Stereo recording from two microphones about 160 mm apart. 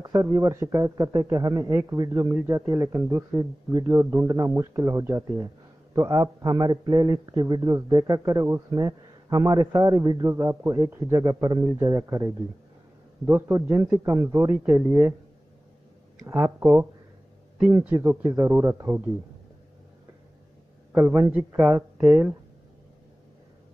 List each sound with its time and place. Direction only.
0.0 s a man's voice: 20° right (ahead or behind)
16.3 s speech: 15° right (ahead or behind)
21.7 s speech: 5° right (ahead or behind)